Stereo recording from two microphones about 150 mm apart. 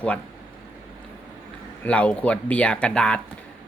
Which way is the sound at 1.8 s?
10° left (ahead or behind).